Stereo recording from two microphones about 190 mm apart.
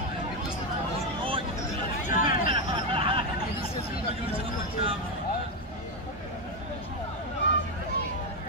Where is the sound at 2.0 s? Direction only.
45° left (ahead or behind).